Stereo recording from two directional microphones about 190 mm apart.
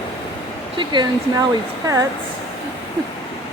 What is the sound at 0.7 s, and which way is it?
Speech, 25° right (ahead or behind).